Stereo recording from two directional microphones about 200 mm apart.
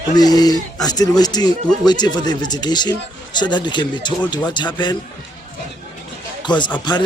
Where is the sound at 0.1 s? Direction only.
20° left (ahead or behind).